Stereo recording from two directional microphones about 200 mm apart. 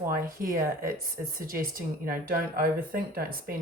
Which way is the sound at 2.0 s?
45° right (ahead or behind).